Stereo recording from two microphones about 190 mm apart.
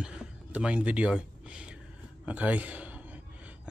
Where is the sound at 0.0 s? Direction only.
5° right (ahead or behind).